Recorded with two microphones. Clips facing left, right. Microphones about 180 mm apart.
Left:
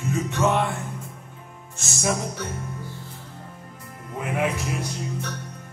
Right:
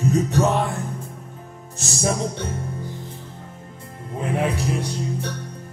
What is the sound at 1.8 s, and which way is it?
Music, 30° right (ahead or behind).